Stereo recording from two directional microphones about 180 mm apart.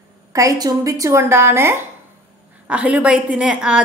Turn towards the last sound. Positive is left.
turn(degrees=-5)  # may be behind; listen again after turning